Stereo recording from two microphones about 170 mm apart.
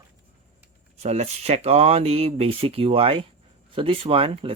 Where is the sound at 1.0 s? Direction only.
40° right (ahead or behind).